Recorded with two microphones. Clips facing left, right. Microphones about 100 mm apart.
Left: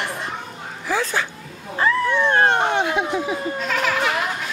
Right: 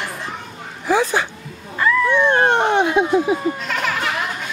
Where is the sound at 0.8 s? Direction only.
20° right (ahead or behind).